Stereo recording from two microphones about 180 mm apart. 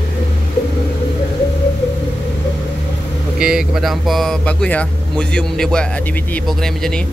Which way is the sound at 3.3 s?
5° right (ahead or behind).